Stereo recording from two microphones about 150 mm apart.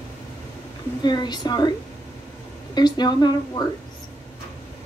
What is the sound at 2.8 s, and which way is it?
Speech, 30° left (ahead or behind).